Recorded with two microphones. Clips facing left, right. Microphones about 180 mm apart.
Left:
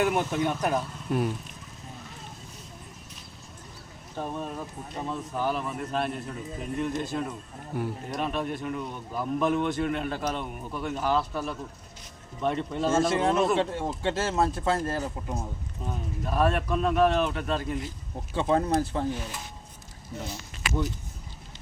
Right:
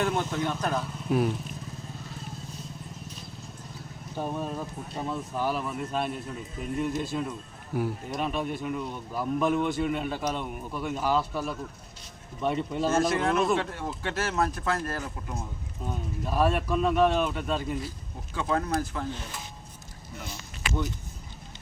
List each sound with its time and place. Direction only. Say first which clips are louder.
0.0 s speech: left 2 dB; 15° left (ahead or behind)
1.1 s speech: right 2 dB; 5° right (ahead or behind)
4.2 s speech: right 1 dB; 5° right (ahead or behind)
12.9 s speech: left 2 dB; 25° left (ahead or behind)
15.9 s speech: even; centre (ahead or behind)
18.3 s speech: left 4 dB; 30° left (ahead or behind)